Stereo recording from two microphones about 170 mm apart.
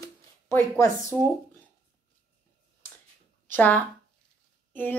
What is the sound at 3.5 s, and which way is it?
Speech, 10° left (ahead or behind).